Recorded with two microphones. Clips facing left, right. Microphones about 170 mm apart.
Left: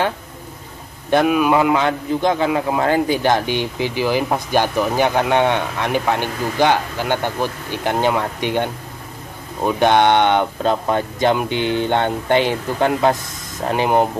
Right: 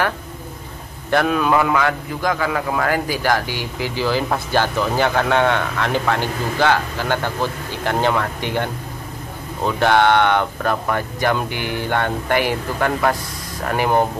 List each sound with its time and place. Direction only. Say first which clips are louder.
1.1 s a man's voice: left 2 dB; 15° left (ahead or behind)